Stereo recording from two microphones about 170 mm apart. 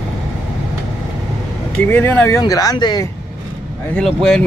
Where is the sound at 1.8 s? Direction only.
10° left (ahead or behind).